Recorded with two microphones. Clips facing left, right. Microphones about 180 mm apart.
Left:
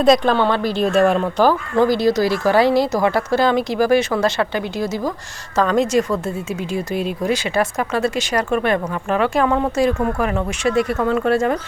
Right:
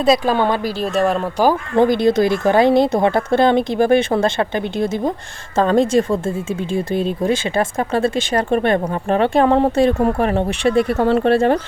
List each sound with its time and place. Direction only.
0.0 s speech: 5° right (ahead or behind)
0.8 s speech: centre (ahead or behind)
1.7 s speech: 20° right (ahead or behind)